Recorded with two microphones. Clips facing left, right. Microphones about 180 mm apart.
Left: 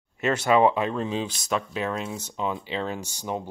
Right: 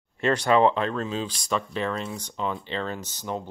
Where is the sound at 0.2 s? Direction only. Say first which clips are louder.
Even; 10° left (ahead or behind).